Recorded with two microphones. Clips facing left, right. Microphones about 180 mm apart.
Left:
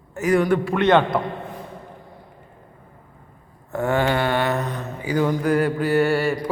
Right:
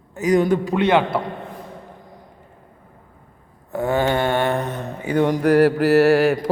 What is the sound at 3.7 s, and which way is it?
Mantra, 15° right (ahead or behind).